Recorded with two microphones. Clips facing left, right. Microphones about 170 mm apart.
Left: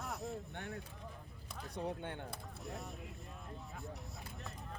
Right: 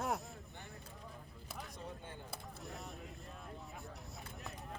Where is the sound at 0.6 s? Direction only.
70° left (ahead or behind).